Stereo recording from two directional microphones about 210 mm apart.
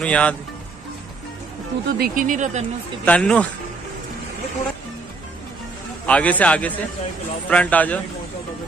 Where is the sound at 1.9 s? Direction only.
45° right (ahead or behind).